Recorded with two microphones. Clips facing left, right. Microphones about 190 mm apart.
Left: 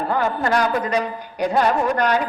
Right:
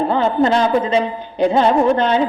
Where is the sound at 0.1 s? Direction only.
20° right (ahead or behind).